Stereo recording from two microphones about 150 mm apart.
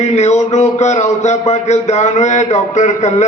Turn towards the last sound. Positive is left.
turn(degrees=50)  # may be behind; listen again after turning